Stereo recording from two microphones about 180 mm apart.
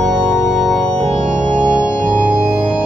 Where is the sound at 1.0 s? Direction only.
35° right (ahead or behind).